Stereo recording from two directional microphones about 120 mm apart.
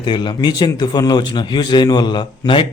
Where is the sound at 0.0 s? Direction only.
40° left (ahead or behind).